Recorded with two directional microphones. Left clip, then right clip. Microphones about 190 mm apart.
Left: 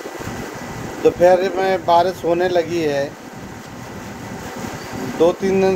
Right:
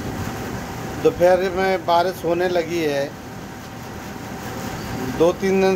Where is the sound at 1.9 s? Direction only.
15° right (ahead or behind).